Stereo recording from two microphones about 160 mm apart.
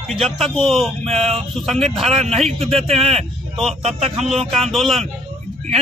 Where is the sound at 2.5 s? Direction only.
35° right (ahead or behind).